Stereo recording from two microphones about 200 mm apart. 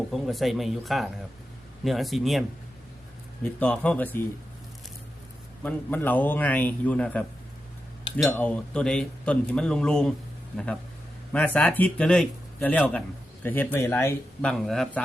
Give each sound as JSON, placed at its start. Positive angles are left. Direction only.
{"t": 0.1, "sound": "speech", "side_deg": 0}
{"t": 3.4, "sound": "a man's voice", "side_deg": 5}
{"t": 5.6, "sound": "a man's voice", "side_deg": 10}
{"t": 11.3, "sound": "a man's voice", "side_deg": 5}